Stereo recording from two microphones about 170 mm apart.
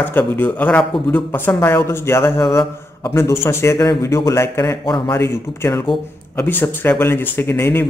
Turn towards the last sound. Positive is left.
turn(degrees=10)  # may be behind; listen again after turning